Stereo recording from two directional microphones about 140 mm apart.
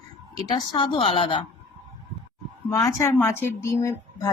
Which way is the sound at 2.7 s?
20° left (ahead or behind).